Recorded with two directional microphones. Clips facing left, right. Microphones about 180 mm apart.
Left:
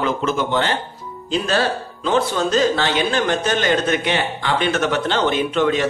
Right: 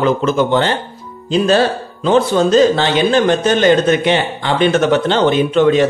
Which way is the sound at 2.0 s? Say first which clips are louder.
Right 7 dB; 25° right (ahead or behind).